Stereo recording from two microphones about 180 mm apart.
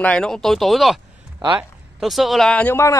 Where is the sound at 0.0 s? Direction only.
5° left (ahead or behind).